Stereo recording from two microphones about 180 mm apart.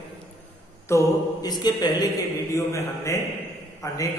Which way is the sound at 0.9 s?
20° left (ahead or behind).